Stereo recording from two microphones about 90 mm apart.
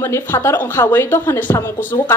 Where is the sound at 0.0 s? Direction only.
25° left (ahead or behind).